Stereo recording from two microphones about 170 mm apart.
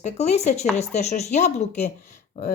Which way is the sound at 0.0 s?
40° left (ahead or behind).